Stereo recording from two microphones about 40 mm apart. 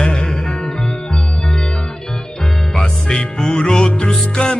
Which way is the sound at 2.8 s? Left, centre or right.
Centre.